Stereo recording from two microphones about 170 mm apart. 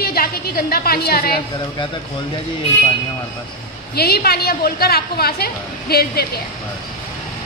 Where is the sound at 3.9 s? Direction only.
65° left (ahead or behind).